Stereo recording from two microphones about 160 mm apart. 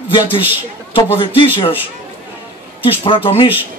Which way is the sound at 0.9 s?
35° left (ahead or behind).